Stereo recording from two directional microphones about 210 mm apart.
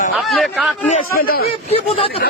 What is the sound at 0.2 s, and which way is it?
Speech, centre (ahead or behind).